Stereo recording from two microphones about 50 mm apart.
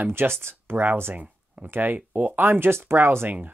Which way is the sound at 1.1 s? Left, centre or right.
Right.